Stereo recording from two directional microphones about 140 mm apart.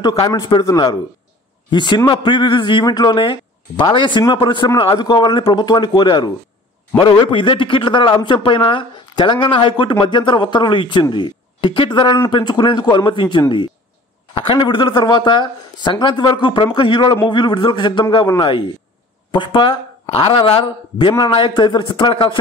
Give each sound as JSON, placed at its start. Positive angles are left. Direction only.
{"t": 0.3, "sound": "a man's voice", "side_deg": 30}